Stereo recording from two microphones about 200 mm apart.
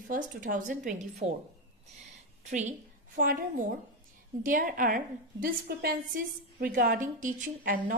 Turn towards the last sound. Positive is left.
turn(degrees=-40)  # may be behind; listen again after turning